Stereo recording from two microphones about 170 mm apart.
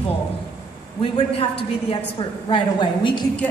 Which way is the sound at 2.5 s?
30° left (ahead or behind).